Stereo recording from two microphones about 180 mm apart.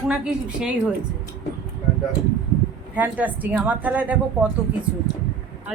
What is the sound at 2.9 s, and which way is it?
Speech, 10° right (ahead or behind).